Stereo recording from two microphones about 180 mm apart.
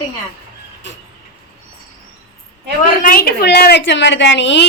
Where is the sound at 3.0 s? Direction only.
55° left (ahead or behind); by 4.6 s 80° left.